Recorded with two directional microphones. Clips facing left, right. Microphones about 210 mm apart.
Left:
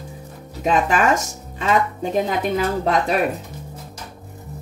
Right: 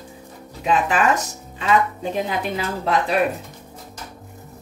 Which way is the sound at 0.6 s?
45° left (ahead or behind).